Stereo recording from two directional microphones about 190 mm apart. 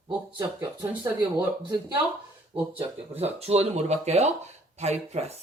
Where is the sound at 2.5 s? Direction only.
30° right (ahead or behind).